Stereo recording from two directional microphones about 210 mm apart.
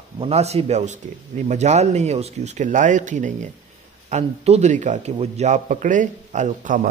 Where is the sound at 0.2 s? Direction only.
30° right (ahead or behind).